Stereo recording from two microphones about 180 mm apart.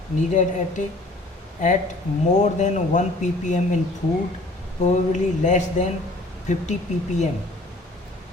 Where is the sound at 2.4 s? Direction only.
40° left (ahead or behind).